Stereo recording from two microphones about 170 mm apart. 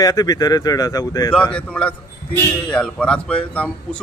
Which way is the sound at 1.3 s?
5° left (ahead or behind).